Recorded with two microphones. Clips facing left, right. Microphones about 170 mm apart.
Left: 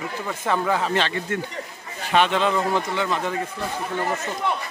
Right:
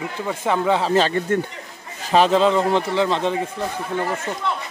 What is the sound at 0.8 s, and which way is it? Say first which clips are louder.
Speech: right 5 dB; 35° right (ahead or behind).